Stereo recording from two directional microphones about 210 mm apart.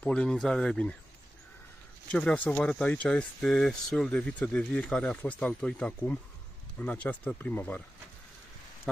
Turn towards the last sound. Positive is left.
turn(degrees=10)  # may be behind; listen again after turning